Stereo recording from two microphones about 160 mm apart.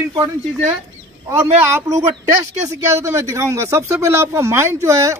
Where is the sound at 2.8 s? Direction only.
15° right (ahead or behind).